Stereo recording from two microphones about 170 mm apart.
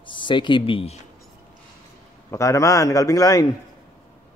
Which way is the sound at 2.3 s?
20° left (ahead or behind).